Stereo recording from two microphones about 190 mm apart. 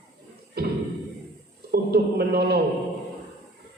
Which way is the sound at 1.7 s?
55° right (ahead or behind).